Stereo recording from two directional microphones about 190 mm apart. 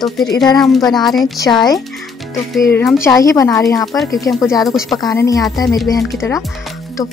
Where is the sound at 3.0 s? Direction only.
20° left (ahead or behind).